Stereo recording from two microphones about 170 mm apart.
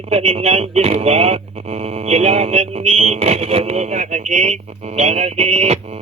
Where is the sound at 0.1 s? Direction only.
35° right (ahead or behind).